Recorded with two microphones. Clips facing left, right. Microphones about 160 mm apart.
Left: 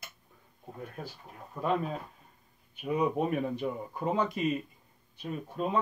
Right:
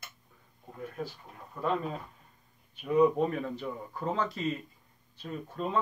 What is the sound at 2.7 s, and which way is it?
Speech, 15° left (ahead or behind).